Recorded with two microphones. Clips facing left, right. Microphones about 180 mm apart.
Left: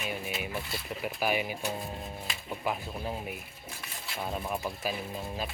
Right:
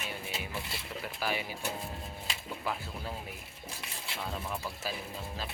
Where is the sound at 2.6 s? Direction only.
15° left (ahead or behind).